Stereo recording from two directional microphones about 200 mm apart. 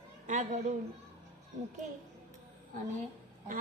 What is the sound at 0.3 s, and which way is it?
Speech, 35° right (ahead or behind).